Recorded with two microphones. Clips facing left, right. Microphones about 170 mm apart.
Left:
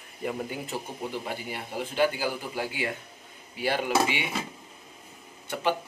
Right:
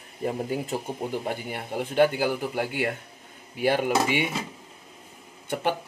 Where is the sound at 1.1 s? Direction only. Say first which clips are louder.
Right 4 dB; 50° right (ahead or behind).